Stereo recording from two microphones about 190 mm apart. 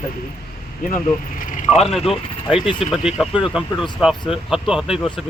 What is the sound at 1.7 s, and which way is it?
Speech, centre (ahead or behind).